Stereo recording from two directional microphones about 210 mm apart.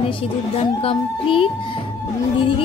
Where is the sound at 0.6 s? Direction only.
25° left (ahead or behind).